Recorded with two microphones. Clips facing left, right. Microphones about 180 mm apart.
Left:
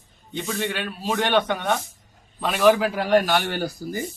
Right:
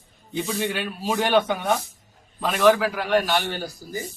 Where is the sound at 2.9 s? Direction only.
35° left (ahead or behind); by 3.7 s 50° left (ahead or behind).